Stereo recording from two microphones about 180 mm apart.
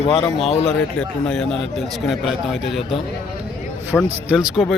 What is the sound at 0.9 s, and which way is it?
A man's voice, 5° left (ahead or behind).